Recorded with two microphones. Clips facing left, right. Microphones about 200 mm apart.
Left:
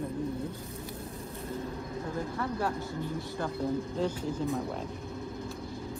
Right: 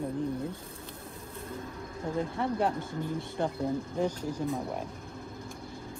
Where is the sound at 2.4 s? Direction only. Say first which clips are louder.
Right 3 dB; 25° right (ahead or behind).